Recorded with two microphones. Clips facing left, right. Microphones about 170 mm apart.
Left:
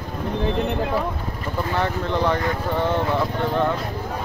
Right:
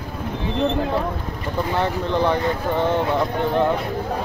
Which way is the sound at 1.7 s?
15° right (ahead or behind).